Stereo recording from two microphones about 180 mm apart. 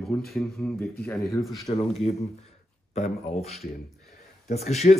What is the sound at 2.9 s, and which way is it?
Speech, 35° left (ahead or behind).